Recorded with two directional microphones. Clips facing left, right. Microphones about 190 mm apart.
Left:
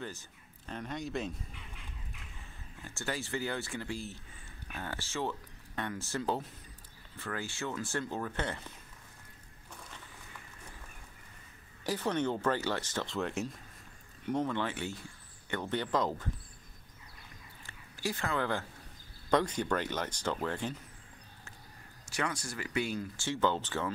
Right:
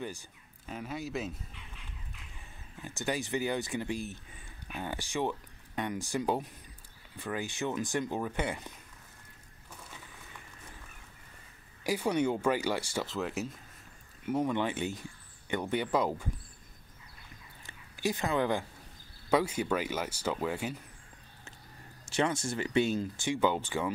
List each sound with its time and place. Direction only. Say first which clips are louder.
0.0 s speech: right 3 dB; 15° right (ahead or behind)
2.8 s speech: right 4 dB; 15° right (ahead or behind)
11.8 s speech: right 3 dB; 10° right (ahead or behind)
17.6 s speech: right 4 dB; 15° right (ahead or behind)
22.0 s speech: right 6 dB; 25° right (ahead or behind)